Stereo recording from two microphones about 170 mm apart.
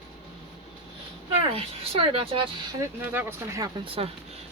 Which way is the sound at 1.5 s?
30° right (ahead or behind).